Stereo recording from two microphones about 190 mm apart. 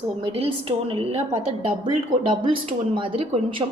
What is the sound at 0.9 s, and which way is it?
A woman's voice, 30° right (ahead or behind).